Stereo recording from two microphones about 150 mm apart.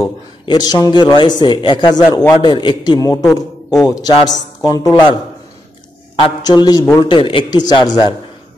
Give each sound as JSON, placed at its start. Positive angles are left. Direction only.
{"t": 0.0, "sound": "a man's voice", "side_deg": 25}
{"t": 6.1, "sound": "a man's voice", "side_deg": 30}